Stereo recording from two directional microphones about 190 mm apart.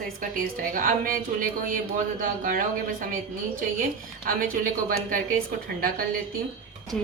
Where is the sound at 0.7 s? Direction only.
45° right (ahead or behind).